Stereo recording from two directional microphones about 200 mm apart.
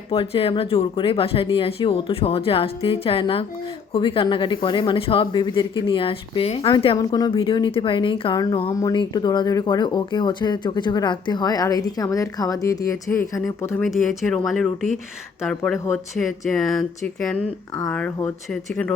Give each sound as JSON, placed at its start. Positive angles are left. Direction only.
{"t": 0.1, "sound": "speech", "side_deg": 30}
{"t": 13.8, "sound": "speech", "side_deg": 0}